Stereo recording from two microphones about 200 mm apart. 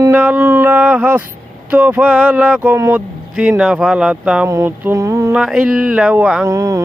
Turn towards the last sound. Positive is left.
turn(degrees=-15)  # may be behind; listen again after turning